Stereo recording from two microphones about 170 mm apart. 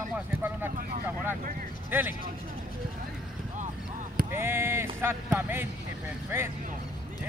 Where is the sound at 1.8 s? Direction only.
10° right (ahead or behind).